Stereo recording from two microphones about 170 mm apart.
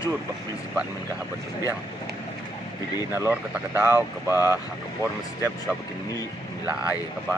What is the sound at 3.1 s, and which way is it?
Speech, 10° right (ahead or behind).